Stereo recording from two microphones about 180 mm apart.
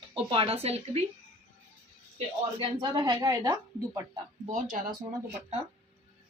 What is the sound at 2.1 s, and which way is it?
Speech, 30° right (ahead or behind).